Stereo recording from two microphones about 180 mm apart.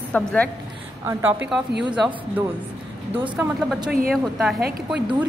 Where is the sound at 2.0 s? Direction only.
10° right (ahead or behind).